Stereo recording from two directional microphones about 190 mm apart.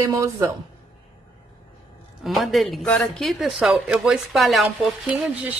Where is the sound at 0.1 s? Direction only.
15° right (ahead or behind).